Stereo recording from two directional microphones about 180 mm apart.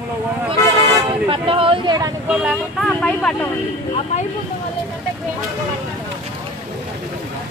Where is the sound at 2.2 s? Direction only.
Centre (ahead or behind).